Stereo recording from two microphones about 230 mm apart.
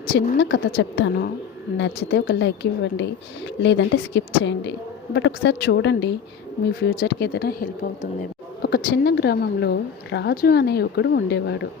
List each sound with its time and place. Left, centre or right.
0.1 s a woman's voice: left